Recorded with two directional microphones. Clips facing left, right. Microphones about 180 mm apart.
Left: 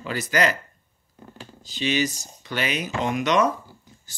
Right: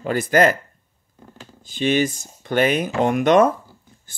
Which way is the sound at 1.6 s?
55° right (ahead or behind).